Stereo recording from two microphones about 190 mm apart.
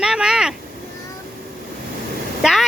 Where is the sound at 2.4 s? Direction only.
Centre (ahead or behind).